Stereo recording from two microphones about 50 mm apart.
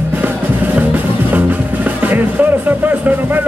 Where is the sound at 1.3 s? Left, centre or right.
Right.